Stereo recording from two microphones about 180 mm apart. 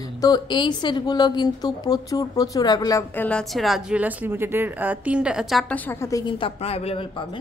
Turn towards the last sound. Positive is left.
turn(degrees=30)  # may be behind; listen again after turning